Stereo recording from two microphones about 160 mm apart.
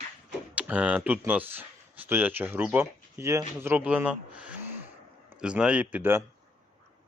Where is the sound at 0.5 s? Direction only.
10° right (ahead or behind).